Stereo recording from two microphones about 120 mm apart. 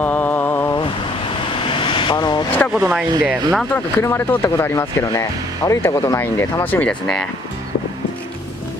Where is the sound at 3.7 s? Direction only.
20° left (ahead or behind).